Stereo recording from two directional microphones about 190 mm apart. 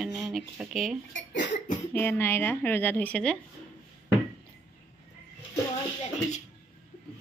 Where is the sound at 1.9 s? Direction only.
10° left (ahead or behind).